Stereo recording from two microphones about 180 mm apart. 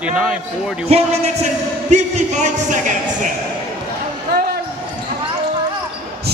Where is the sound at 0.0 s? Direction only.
5° right (ahead or behind).